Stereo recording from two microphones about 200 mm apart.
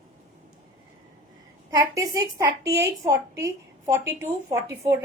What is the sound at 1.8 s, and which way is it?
A woman's voice, 15° right (ahead or behind).